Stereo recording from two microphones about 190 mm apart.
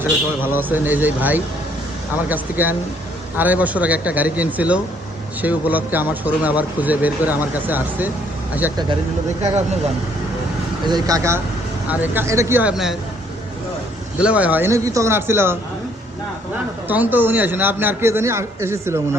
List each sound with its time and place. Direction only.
0.0 s speech: 10° right (ahead or behind)
10.8 s speech: 20° right (ahead or behind); by 13.0 s centre (ahead or behind)
14.2 s speech: 5° right (ahead or behind)
16.9 s speech: 10° right (ahead or behind)